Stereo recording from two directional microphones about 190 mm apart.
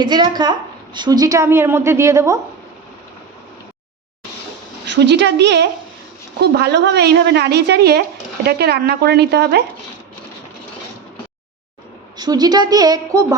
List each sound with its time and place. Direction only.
0.0 s a woman's voice: 25° right (ahead or behind)
4.9 s a woman's voice: 65° right (ahead or behind)
12.1 s a woman's voice: 20° right (ahead or behind)